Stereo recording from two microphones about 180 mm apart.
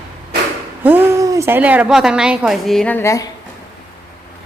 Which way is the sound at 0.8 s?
10° right (ahead or behind).